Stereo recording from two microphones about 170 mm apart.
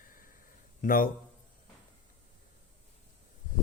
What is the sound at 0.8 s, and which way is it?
Speech, 55° left (ahead or behind).